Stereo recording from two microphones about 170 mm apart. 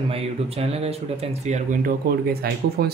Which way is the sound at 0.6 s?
35° right (ahead or behind).